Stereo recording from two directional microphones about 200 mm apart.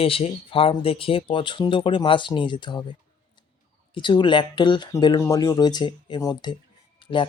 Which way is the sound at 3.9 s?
25° left (ahead or behind).